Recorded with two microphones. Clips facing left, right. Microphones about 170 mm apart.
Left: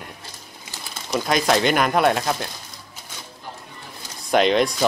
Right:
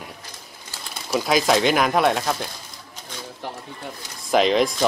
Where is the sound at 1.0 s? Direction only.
5° right (ahead or behind).